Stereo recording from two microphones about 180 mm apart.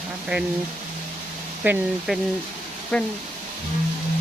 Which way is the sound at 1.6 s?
10° right (ahead or behind).